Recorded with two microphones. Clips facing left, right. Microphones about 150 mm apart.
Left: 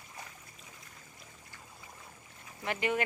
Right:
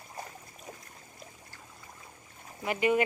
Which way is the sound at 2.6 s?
10° right (ahead or behind).